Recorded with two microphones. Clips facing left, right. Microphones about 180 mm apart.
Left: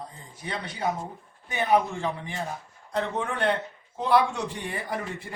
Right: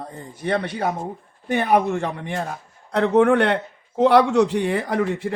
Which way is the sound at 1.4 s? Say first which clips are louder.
Right 5 dB; 65° right (ahead or behind).